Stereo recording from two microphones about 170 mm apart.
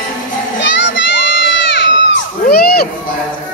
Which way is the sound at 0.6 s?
90° left.